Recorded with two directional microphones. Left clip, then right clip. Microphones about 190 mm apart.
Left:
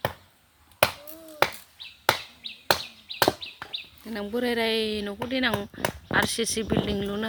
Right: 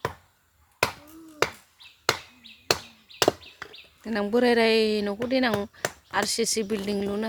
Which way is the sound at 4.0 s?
40° right (ahead or behind).